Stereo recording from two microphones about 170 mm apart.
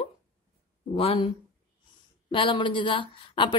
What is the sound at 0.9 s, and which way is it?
Speech, 35° left (ahead or behind).